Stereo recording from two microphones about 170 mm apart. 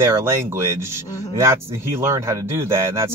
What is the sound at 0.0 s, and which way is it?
Speech, 15° right (ahead or behind).